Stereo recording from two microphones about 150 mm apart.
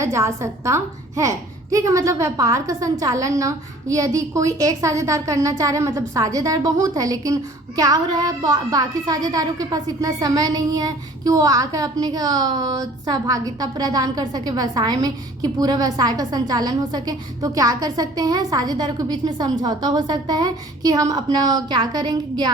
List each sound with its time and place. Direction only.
0.0 s speech: 20° right (ahead or behind)